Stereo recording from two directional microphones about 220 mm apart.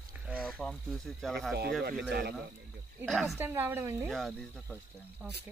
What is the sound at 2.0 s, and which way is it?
Speech, 45° right (ahead or behind).